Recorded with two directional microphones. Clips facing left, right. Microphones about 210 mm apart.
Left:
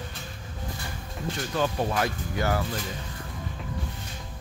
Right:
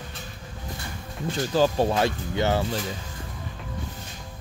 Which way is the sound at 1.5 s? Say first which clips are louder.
Right 6 dB; 30° right (ahead or behind).